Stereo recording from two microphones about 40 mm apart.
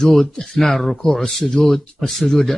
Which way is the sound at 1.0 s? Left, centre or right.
Centre.